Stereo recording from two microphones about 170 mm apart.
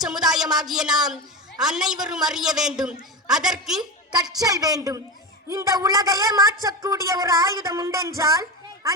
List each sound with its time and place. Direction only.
0.0 s a sound: 5° right (ahead or behind)
0.5 s a woman's voice: 5° right (ahead or behind)
4.4 s speech: 20° right (ahead or behind)